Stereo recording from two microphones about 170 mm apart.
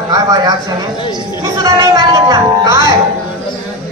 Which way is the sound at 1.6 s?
20° right (ahead or behind).